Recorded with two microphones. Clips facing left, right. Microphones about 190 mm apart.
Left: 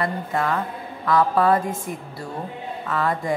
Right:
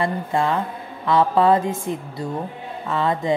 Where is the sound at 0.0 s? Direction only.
25° right (ahead or behind).